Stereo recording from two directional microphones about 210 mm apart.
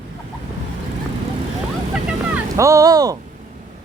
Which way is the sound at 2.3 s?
15° right (ahead or behind).